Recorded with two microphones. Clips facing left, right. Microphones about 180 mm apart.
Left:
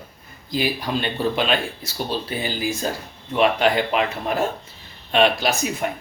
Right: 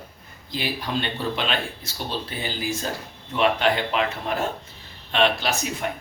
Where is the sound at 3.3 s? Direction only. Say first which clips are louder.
Left 3 dB; 10° left (ahead or behind).